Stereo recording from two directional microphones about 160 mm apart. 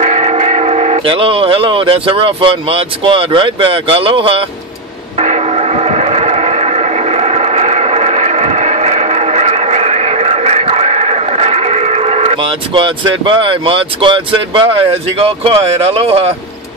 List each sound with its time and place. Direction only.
0.0 s speech: 45° right (ahead or behind)
5.1 s train: 40° right (ahead or behind)